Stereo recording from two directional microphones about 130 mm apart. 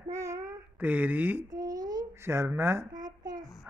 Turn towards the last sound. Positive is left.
turn(degrees=-30)  # may be behind; listen again after turning